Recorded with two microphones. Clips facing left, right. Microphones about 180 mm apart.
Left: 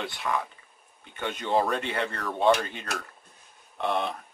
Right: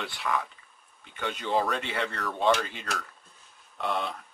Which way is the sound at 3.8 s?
20° left (ahead or behind).